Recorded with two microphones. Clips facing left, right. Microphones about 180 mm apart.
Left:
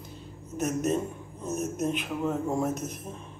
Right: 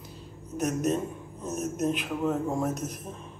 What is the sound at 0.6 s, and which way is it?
A man's voice, centre (ahead or behind).